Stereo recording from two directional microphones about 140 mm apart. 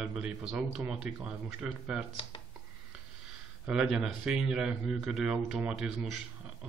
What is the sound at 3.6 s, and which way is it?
Speech, 5° right (ahead or behind).